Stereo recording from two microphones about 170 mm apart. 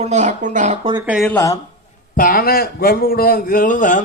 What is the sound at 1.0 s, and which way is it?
Speech, 5° right (ahead or behind).